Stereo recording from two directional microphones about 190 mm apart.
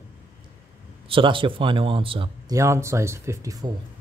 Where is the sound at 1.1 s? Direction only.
25° right (ahead or behind).